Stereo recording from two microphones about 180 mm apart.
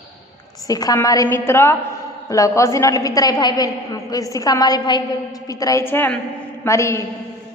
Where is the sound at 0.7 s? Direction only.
20° left (ahead or behind).